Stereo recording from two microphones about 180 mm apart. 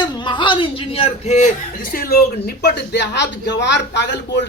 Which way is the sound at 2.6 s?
65° left (ahead or behind).